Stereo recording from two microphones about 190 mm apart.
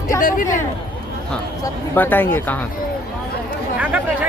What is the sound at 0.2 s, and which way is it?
Speech, 45° left (ahead or behind).